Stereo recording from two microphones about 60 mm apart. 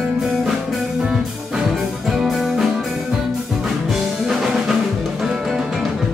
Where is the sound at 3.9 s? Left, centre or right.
Centre.